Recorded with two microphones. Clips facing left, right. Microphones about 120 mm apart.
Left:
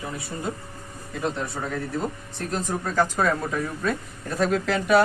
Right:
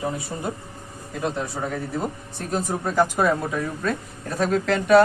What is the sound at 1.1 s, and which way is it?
Speech, 5° right (ahead or behind).